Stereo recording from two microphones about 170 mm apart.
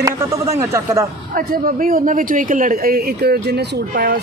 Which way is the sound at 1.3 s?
55° right (ahead or behind).